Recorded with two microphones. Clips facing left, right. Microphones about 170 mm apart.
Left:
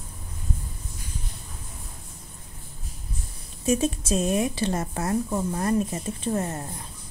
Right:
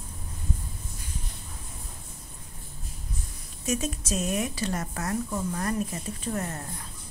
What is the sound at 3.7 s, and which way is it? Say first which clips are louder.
A woman's voice: left 6 dB; 30° left (ahead or behind).